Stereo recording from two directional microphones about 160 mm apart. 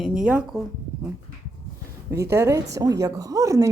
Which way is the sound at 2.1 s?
20° right (ahead or behind).